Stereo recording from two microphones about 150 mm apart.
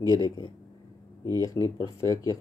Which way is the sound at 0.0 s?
25° left (ahead or behind).